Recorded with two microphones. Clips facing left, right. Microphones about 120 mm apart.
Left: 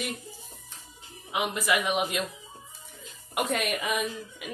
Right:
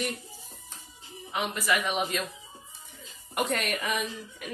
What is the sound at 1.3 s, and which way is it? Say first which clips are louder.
Speech: left 1 dB; 10° left (ahead or behind).